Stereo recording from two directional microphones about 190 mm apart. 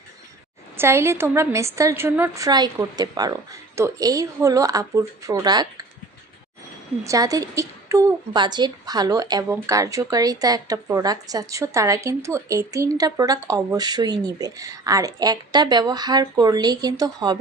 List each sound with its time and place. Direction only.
0.8 s a woman's voice: 15° right (ahead or behind)
7.0 s a woman's voice: 15° right (ahead or behind)